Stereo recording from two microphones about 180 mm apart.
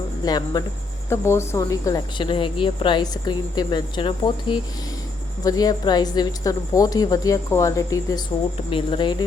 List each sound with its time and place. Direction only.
0.3 s speech: 20° left (ahead or behind)